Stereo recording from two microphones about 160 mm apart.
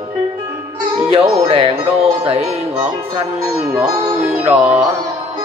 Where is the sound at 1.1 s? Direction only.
35° right (ahead or behind).